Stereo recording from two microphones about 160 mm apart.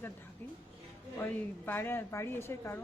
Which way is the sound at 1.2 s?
10° left (ahead or behind).